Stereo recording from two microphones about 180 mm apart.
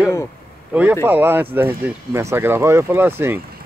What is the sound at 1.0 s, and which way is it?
Speech, 10° right (ahead or behind).